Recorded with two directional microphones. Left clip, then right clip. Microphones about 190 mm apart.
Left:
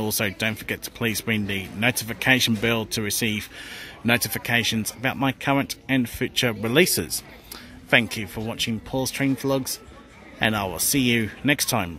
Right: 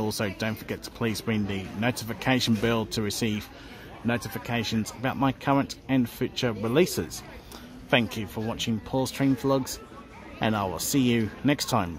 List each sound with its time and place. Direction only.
0.2 s speech: 10° left (ahead or behind)
4.0 s a man's voice: 25° left (ahead or behind); by 11.6 s 5° left (ahead or behind)